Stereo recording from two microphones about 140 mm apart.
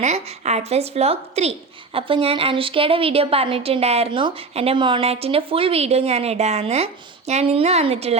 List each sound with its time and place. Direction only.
0.0 s a woman's voice: 55° right (ahead or behind)